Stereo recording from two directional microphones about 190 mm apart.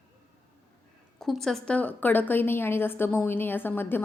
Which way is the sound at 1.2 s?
Centre (ahead or behind).